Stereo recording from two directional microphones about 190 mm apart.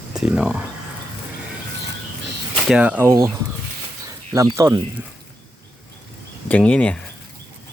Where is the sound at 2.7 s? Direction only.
5° right (ahead or behind).